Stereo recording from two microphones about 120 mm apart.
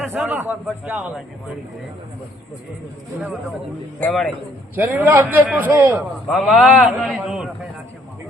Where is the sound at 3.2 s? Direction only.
Centre (ahead or behind).